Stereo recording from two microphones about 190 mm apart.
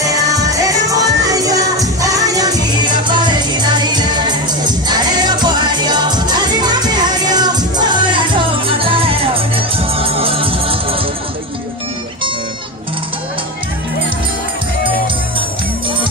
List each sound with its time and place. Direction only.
0.0 s music: 20° right (ahead or behind)